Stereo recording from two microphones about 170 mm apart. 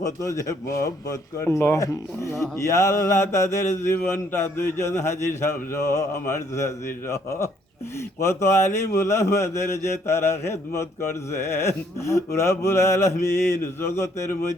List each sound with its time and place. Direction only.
0.0 s speech: 20° left (ahead or behind)
2.6 s mantra: 15° left (ahead or behind)